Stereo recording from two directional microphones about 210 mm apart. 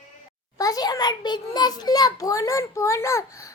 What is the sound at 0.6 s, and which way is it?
A child's voice, 15° left (ahead or behind).